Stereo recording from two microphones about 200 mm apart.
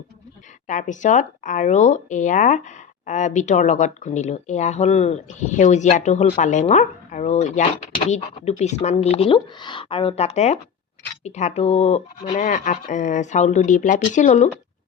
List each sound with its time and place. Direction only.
0.7 s speech: 35° left (ahead or behind)